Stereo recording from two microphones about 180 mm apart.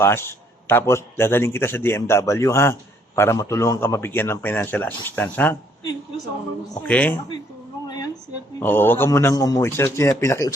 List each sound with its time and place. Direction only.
0.0 s a man's voice: 15° left (ahead or behind)
6.8 s a man's voice: 5° left (ahead or behind)
7.9 s a sound: 20° left (ahead or behind)
8.5 s a man's voice: 10° left (ahead or behind)